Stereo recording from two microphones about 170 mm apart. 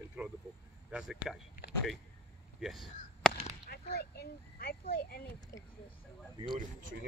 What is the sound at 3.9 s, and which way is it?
A child's voice, 70° left (ahead or behind).